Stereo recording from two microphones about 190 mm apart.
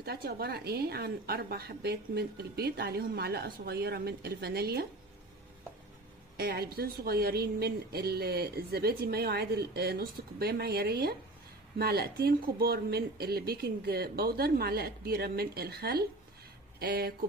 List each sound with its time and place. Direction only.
0.0 s speech: 55° right (ahead or behind)
6.3 s speech: 55° right (ahead or behind)